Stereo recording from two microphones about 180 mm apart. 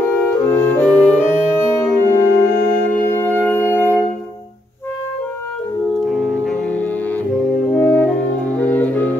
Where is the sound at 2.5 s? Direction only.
55° left (ahead or behind).